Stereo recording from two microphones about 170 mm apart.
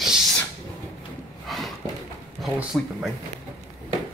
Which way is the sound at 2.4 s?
Centre (ahead or behind).